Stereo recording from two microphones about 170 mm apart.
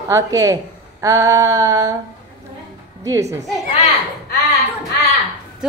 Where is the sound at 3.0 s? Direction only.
15° right (ahead or behind).